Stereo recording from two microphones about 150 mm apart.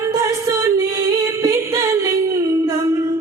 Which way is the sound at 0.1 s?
25° right (ahead or behind).